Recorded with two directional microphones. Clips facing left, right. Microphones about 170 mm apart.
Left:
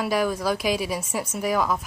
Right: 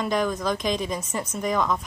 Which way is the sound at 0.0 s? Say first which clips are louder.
Left 1 dB; 5° left (ahead or behind).